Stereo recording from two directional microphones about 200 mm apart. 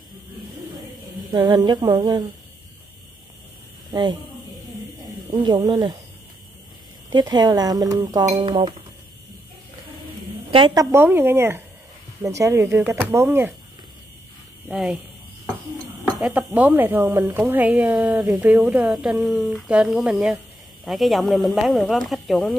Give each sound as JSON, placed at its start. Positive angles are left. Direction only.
{"t": 1.5, "sound": "speech", "side_deg": -20}
{"t": 3.9, "sound": "a man's voice", "side_deg": -20}
{"t": 5.3, "sound": "speech", "side_deg": -20}
{"t": 7.1, "sound": "speech", "side_deg": -20}
{"t": 10.5, "sound": "speech", "side_deg": -20}
{"t": 14.7, "sound": "speech", "side_deg": -5}
{"t": 16.2, "sound": "speech", "side_deg": -5}